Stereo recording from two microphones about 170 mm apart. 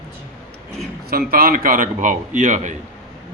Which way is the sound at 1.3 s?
60° right (ahead or behind).